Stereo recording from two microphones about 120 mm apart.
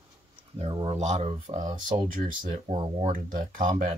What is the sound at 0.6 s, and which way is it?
Speech, 50° right (ahead or behind).